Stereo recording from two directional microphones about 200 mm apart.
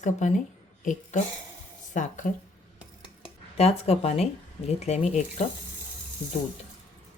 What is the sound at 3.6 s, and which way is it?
Speech, 30° left (ahead or behind).